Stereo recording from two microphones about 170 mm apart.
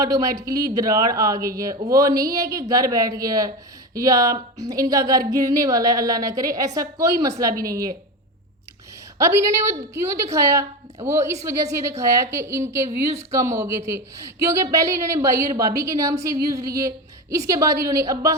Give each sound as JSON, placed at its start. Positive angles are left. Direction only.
{"t": 0.0, "sound": "speech", "side_deg": -20}
{"t": 9.1, "sound": "a woman's voice", "side_deg": -15}